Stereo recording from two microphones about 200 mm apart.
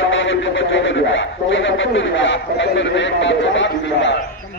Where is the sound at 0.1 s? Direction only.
70° left (ahead or behind).